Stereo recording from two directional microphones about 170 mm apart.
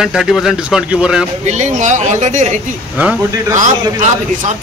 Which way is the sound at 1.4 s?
45° right (ahead or behind).